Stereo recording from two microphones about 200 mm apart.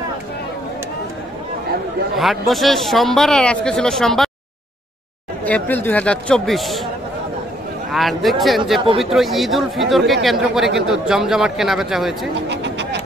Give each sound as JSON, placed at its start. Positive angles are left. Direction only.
{"t": 2.1, "sound": "speech", "side_deg": 0}
{"t": 5.4, "sound": "speech", "side_deg": 10}
{"t": 7.9, "sound": "speech", "side_deg": 0}
{"t": 12.4, "sound": "a sound", "side_deg": -60}